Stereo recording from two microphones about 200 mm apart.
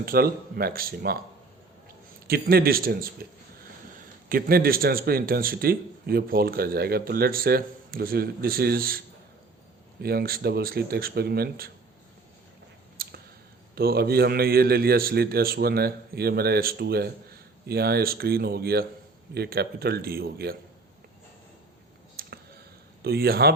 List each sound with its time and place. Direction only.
0.0 s speech: 50° right (ahead or behind)
2.2 s speech: 50° right (ahead or behind)
4.3 s speech: 50° right (ahead or behind)
10.0 s speech: 50° right (ahead or behind)
13.0 s a sound: 50° right (ahead or behind)
13.7 s speech: 50° right (ahead or behind)
22.1 s a sound: 45° right (ahead or behind)
23.0 s speech: 50° right (ahead or behind)